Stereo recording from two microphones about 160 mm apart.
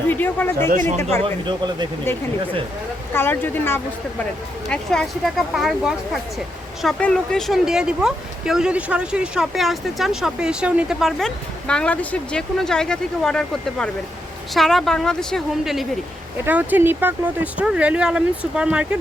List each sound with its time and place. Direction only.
0.1 s speech: 10° left (ahead or behind)
1.2 s speech: 30° right (ahead or behind)
3.2 s speech: 10° left (ahead or behind); by 18.9 s 5° right (ahead or behind)